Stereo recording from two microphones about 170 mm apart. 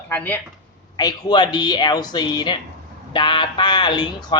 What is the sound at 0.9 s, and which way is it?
Speech, 25° left (ahead or behind).